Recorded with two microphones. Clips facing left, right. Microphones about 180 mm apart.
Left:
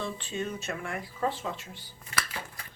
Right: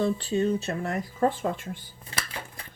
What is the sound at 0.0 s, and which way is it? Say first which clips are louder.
Speech: right 9 dB; 35° right (ahead or behind).